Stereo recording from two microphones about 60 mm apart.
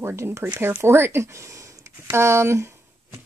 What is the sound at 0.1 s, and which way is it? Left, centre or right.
Speech, right.